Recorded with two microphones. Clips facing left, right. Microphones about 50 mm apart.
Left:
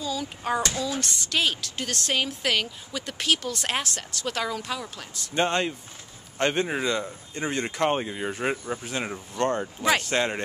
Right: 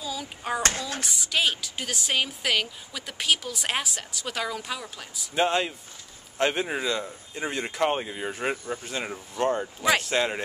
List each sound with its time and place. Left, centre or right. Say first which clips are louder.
0.0 s hands: left 3 dB; centre
0.6 s speech: right 2 dB; right
1.0 s speech: right 4 dB; centre